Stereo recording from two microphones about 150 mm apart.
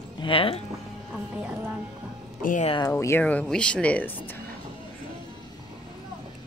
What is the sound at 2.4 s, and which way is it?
Speech, 55° left (ahead or behind).